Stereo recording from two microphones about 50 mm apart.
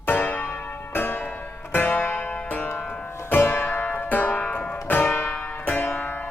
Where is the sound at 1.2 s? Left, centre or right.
Left.